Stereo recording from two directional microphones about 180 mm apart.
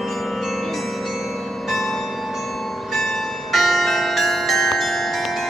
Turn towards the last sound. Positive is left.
turn(degrees=0)  # may be behind; listen again after turning